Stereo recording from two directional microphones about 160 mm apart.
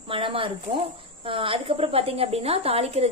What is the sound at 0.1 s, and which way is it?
Speech, 35° right (ahead or behind).